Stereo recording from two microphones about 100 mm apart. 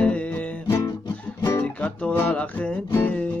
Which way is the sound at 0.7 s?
30° left (ahead or behind).